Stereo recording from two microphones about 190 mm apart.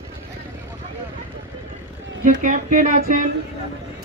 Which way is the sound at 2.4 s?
45° right (ahead or behind).